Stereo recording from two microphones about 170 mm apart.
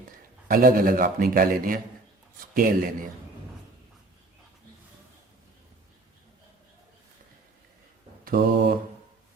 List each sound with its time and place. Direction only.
0.4 s a man's voice: 55° right (ahead or behind)
8.2 s mantra: 60° right (ahead or behind)